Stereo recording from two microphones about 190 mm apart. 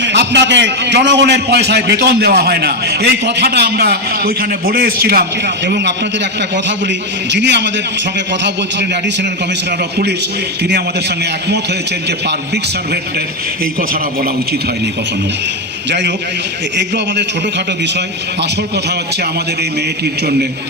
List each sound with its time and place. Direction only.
0.0 s a man's voice: 65° right (ahead or behind)
5.6 s a man's voice: 65° right (ahead or behind)
7.3 s a man's voice: 65° right (ahead or behind)